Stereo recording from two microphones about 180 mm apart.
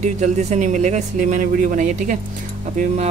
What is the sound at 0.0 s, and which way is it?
Speech, 40° right (ahead or behind).